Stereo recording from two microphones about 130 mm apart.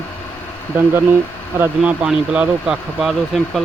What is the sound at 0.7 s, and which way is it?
Speech, 15° right (ahead or behind).